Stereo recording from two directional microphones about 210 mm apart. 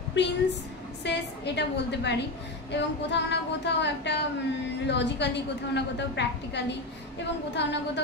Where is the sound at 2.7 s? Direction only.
55° left (ahead or behind).